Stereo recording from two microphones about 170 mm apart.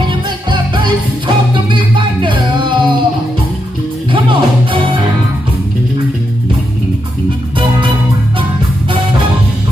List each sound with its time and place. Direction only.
0.1 s music: 30° right (ahead or behind)
4.1 s music: 30° right (ahead or behind)